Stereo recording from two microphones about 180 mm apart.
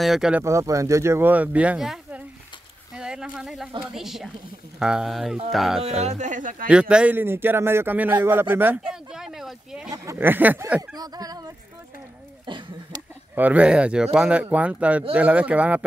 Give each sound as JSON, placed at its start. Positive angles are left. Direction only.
{"t": 0.0, "sound": "speech", "side_deg": -5}
{"t": 3.0, "sound": "a sound", "side_deg": -5}
{"t": 3.8, "sound": "speech", "side_deg": 0}
{"t": 5.8, "sound": "speech", "side_deg": -35}
{"t": 6.7, "sound": "a man's voice", "side_deg": -5}
{"t": 12.4, "sound": "a sound", "side_deg": -25}
{"t": 13.3, "sound": "speech", "side_deg": -10}